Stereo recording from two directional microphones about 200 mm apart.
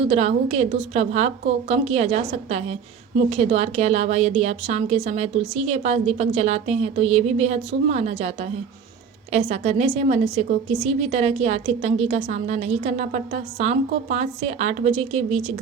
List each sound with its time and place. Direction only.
0.1 s speech: 35° right (ahead or behind)